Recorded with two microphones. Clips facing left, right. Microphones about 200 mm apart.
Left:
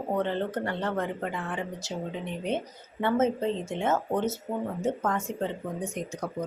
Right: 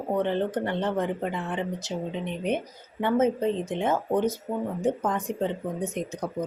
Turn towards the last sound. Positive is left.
turn(degrees=-20)  # may be behind; listen again after turning